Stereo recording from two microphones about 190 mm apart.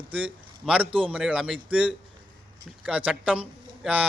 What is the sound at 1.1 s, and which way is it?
Speech, 5° right (ahead or behind).